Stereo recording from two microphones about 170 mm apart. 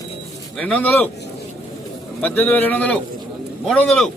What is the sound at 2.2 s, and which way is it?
Speech, 10° left (ahead or behind).